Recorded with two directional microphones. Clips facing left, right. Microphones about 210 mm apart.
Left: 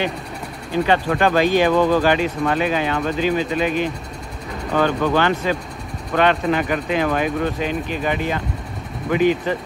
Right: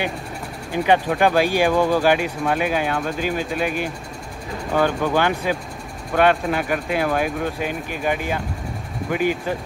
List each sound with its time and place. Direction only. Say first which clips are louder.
0.8 s speech: right 2 dB; 15° right (ahead or behind)